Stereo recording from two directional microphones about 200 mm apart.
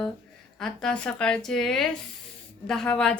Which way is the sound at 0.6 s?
5° left (ahead or behind).